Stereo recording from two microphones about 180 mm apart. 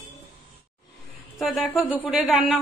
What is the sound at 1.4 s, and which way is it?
A woman's voice, centre (ahead or behind).